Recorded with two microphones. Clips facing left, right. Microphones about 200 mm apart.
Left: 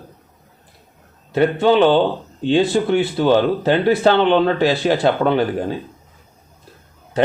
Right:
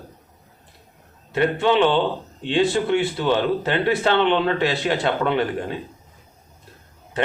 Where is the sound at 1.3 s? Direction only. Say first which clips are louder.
Left 4 dB; 40° left (ahead or behind).